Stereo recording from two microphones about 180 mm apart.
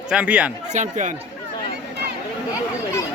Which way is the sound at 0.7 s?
40° right (ahead or behind).